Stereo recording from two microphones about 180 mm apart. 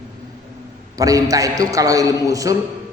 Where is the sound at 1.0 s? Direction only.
20° right (ahead or behind).